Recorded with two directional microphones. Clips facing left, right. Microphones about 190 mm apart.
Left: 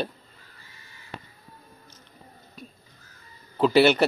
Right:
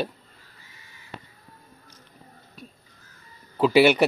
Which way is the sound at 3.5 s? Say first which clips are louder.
Right 1 dB; 5° right (ahead or behind).